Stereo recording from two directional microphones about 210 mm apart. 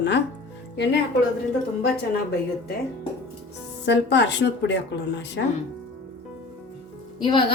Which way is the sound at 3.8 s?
55° left (ahead or behind).